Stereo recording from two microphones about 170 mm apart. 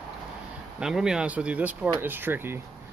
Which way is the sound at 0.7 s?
5° right (ahead or behind).